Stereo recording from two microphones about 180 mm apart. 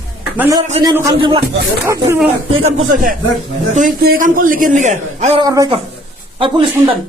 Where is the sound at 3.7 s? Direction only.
45° right (ahead or behind).